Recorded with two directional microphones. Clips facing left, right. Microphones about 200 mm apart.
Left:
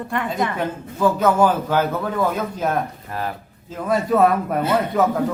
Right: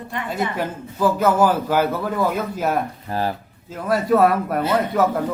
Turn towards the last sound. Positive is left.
turn(degrees=0)  # may be behind; listen again after turning